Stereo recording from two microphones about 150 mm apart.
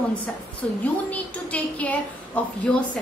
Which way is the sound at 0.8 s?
10° left (ahead or behind).